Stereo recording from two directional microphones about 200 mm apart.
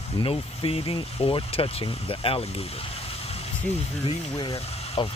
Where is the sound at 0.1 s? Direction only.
30° left (ahead or behind).